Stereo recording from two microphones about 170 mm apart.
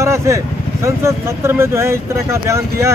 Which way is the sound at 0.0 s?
15° right (ahead or behind).